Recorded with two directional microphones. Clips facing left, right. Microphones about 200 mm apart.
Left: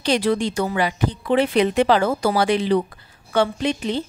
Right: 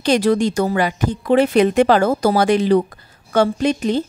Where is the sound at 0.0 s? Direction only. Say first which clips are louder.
Right 4 dB; 45° right (ahead or behind).